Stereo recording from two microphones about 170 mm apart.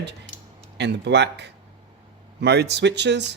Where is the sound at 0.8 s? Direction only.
90° right.